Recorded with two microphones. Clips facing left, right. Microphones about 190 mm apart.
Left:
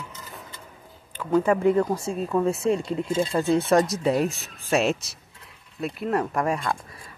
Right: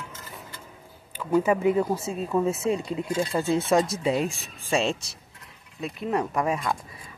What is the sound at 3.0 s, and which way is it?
Speech, 25° left (ahead or behind).